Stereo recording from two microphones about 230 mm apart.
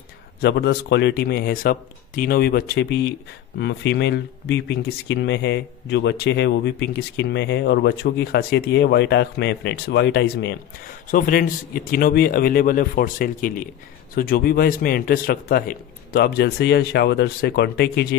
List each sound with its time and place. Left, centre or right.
0.4 s speech: left